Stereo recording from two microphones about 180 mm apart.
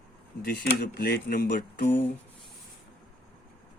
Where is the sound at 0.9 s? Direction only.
60° left (ahead or behind).